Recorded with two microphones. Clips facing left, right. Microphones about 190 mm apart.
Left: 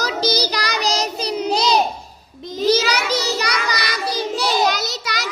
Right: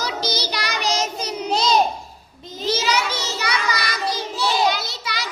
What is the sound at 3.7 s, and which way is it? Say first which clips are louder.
Child singing: left 2 dB; 65° left (ahead or behind).